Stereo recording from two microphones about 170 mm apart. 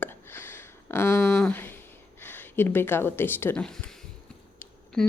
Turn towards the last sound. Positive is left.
turn(degrees=5)  # may be behind; listen again after turning